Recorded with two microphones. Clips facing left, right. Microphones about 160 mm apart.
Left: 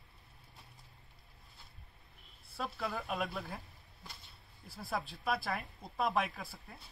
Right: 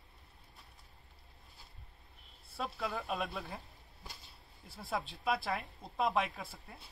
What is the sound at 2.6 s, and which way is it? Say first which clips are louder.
Speech: even; centre (ahead or behind).